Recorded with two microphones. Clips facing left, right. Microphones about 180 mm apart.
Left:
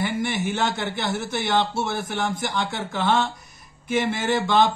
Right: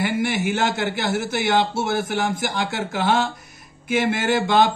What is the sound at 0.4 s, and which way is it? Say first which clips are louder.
Speech: right 3 dB; 80° right.